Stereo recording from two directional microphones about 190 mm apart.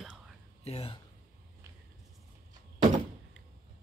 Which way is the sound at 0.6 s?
30° left (ahead or behind).